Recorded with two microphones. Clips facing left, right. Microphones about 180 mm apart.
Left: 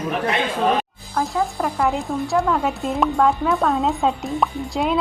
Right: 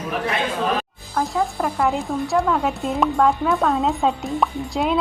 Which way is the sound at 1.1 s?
Centre (ahead or behind).